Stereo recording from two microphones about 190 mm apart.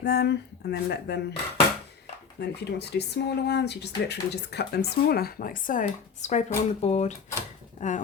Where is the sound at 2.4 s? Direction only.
60° left (ahead or behind).